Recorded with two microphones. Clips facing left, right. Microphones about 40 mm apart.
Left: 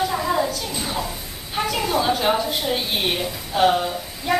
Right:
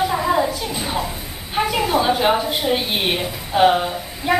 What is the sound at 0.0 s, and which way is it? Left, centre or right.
A woman's voice, centre.